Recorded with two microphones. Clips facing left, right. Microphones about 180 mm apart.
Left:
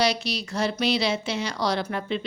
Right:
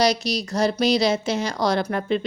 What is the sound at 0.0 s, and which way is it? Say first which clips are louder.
A woman's voice: right 4 dB; 40° right (ahead or behind).